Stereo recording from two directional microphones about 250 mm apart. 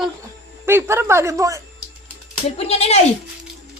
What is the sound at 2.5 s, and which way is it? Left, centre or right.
Speech, left.